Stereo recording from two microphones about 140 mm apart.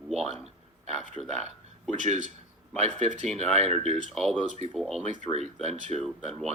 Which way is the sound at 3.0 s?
55° right (ahead or behind).